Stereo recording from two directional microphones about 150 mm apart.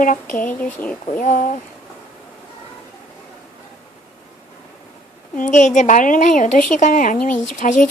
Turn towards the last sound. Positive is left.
turn(degrees=55)  # may be behind; listen again after turning